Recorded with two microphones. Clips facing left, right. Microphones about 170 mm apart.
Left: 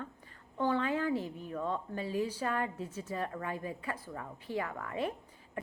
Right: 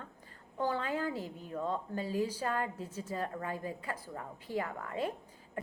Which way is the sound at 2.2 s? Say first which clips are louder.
Left 1 dB; 40° right (ahead or behind).